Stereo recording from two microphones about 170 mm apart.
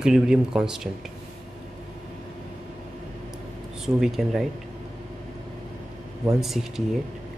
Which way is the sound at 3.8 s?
Centre (ahead or behind).